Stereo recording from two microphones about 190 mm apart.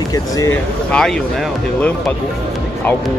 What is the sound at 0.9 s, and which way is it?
Speech, 5° left (ahead or behind).